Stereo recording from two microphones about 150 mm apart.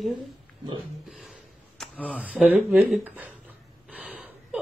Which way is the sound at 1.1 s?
Centre (ahead or behind).